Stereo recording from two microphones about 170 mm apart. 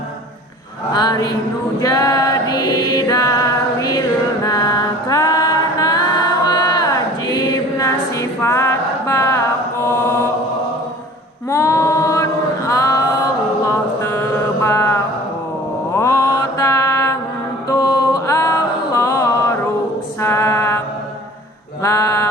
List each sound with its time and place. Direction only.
0.9 s speech: 25° left (ahead or behind)
1.8 s a sound: 20° left (ahead or behind)
3.1 s female singing: 20° left (ahead or behind)
4.4 s mantra: 20° left (ahead or behind)
5.8 s a capella: 20° left (ahead or behind)
6.5 s choir: 25° left (ahead or behind)
7.8 s a sound: 15° left (ahead or behind)
9.8 s mantra: 15° left (ahead or behind)
11.4 s female singing: 20° left (ahead or behind)
13.7 s mantra: 15° left (ahead or behind)
20.2 s music: 15° left (ahead or behind)
21.8 s a sound: 20° left (ahead or behind)